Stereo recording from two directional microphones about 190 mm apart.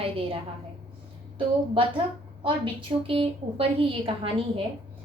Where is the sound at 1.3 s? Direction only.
25° right (ahead or behind).